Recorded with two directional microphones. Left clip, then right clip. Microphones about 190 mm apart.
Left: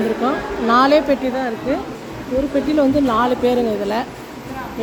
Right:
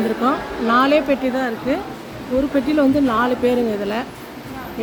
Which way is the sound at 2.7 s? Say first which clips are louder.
Left 1 dB; 10° right (ahead or behind).